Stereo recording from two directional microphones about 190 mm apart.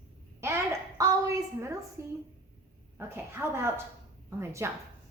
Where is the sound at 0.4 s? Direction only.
15° right (ahead or behind).